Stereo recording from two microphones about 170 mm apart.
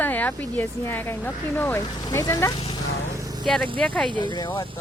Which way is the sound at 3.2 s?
20° right (ahead or behind).